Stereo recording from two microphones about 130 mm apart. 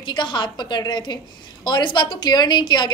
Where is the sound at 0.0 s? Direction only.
35° left (ahead or behind).